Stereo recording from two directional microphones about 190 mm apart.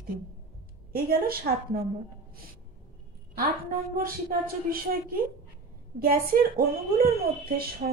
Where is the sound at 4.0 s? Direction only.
50° right (ahead or behind).